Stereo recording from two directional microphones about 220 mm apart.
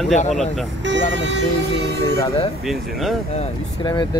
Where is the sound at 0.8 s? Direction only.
55° right (ahead or behind).